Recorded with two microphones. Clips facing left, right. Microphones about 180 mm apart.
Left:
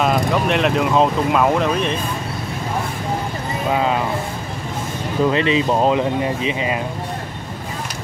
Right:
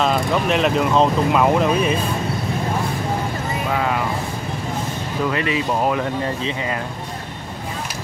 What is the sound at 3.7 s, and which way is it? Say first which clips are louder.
Speech: left 4 dB; 20° left (ahead or behind).